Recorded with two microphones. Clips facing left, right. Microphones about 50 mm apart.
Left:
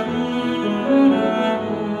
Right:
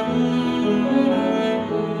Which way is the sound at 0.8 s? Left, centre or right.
Left.